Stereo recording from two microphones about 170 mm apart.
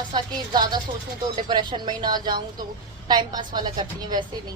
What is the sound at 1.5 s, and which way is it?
A woman's voice, 25° right (ahead or behind).